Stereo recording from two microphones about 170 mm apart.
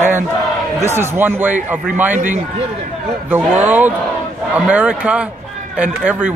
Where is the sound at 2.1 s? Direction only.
50° right (ahead or behind).